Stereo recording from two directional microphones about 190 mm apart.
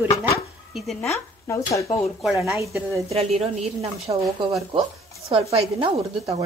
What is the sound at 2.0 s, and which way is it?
Speech, centre (ahead or behind).